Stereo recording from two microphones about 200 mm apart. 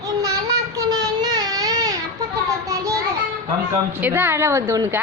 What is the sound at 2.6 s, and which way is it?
Child singing, 15° right (ahead or behind).